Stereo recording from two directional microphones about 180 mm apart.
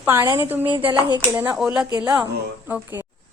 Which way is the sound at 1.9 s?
20° right (ahead or behind).